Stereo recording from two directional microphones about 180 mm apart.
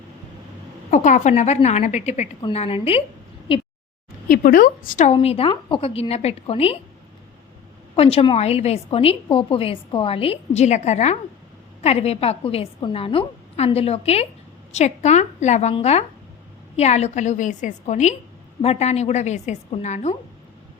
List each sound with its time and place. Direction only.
0.9 s a woman's voice: 40° left (ahead or behind)
4.3 s a woman's voice: 55° left (ahead or behind)
5.1 s a woman's voice: 30° left (ahead or behind)
7.9 s a woman's voice: 30° left (ahead or behind)